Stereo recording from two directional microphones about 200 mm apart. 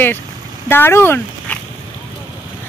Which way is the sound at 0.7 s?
10° left (ahead or behind).